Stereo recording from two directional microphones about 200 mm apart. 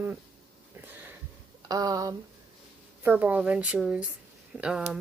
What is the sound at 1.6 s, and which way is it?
Speech, 20° right (ahead or behind).